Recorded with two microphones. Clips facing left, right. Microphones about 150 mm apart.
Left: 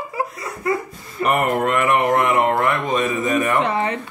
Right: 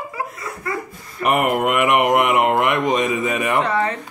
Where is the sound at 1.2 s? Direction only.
10° right (ahead or behind).